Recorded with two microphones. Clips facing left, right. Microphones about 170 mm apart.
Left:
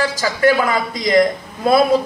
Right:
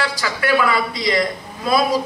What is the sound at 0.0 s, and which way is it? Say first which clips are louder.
A man's voice: left 7 dB; 40° left (ahead or behind).